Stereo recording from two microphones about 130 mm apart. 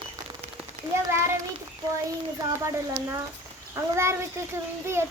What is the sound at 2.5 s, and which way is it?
Speech, 20° right (ahead or behind).